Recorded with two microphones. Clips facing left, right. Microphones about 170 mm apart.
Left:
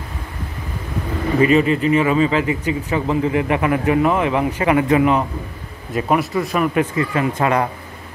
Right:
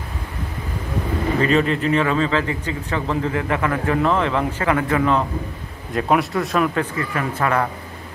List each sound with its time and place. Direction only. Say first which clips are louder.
1.4 s speech: left 5 dB; 5° left (ahead or behind)
5.9 s a man's voice: left 1 dB; centre (ahead or behind)
6.7 s speech: left 5 dB; 15° left (ahead or behind)